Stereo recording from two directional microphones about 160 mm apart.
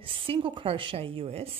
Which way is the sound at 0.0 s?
35° right (ahead or behind).